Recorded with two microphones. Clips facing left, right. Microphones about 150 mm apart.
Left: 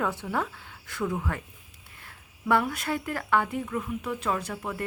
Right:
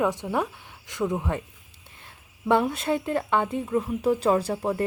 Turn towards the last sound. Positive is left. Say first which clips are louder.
# right 8 dB
turn(degrees=-35)  # may be behind; listen again after turning